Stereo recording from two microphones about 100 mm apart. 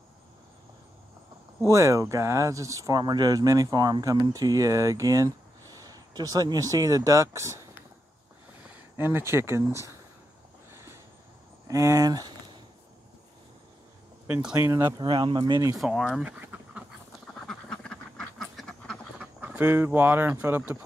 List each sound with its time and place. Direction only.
1.7 s speech: 30° right (ahead or behind)
8.9 s speech: 25° right (ahead or behind)
11.6 s speech: 35° right (ahead or behind)
14.6 s speech: 25° right (ahead or behind)
15.0 s speech: 55° right (ahead or behind)
15.8 s speech: centre (ahead or behind)
16.3 s duck: 15° right (ahead or behind)
17.3 s duck: 5° left (ahead or behind)
19.1 s speech: 15° right (ahead or behind)